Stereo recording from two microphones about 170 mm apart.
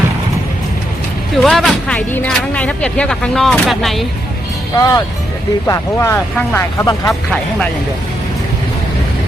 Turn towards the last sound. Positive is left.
turn(degrees=5)  # may be behind; listen again after turning